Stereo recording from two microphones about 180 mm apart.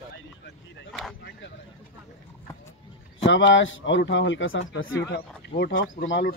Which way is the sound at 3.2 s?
90° left.